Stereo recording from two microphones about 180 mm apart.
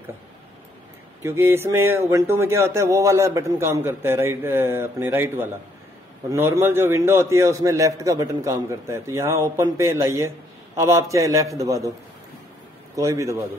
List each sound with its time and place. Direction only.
1.2 s speech: 15° right (ahead or behind)
12.9 s speech: 15° right (ahead or behind)